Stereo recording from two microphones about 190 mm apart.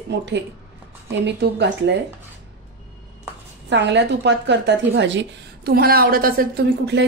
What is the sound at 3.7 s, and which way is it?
A woman's voice, 65° right (ahead or behind).